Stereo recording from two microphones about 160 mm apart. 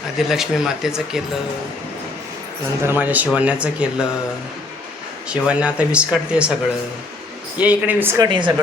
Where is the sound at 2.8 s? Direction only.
10° right (ahead or behind).